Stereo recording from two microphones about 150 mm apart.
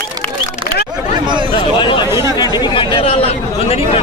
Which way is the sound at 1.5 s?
35° left (ahead or behind).